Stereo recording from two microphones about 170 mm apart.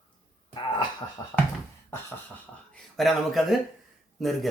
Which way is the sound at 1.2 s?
20° left (ahead or behind).